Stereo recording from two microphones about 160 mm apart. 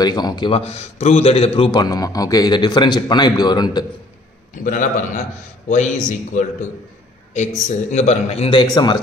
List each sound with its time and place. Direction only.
0.0 s a man's voice: 25° left (ahead or behind)
1.7 s a man's voice: 25° left (ahead or behind)
4.6 s a man's voice: 55° left (ahead or behind); by 9.0 s 25° left (ahead or behind)